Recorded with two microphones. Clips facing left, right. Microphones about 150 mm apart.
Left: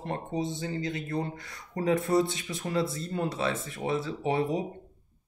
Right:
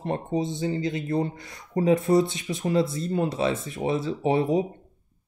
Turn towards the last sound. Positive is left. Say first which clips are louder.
# right 5 dB
turn(degrees=-20)  # may be behind; listen again after turning